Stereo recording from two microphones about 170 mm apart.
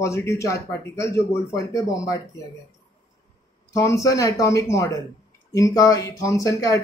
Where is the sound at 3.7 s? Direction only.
20° left (ahead or behind).